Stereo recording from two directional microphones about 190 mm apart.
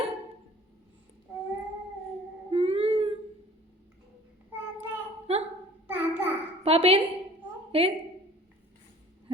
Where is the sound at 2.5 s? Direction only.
30° right (ahead or behind).